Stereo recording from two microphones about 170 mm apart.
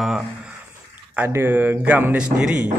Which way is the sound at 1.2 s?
15° right (ahead or behind).